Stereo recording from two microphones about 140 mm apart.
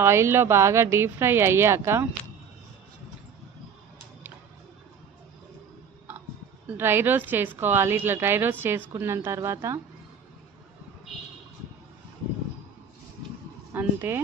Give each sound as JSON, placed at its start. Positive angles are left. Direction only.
{"t": 0.0, "sound": "a woman's voice", "side_deg": -20}
{"t": 6.7, "sound": "a woman's voice", "side_deg": -15}
{"t": 13.7, "sound": "a woman's voice", "side_deg": -15}